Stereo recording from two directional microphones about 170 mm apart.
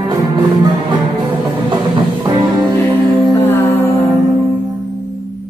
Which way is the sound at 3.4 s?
10° left (ahead or behind).